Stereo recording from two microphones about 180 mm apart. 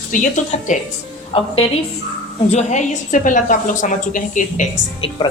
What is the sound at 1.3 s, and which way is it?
Speech, 30° left (ahead or behind).